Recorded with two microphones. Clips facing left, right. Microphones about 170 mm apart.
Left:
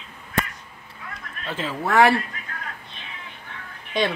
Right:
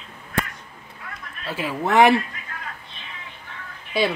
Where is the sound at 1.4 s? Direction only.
10° right (ahead or behind).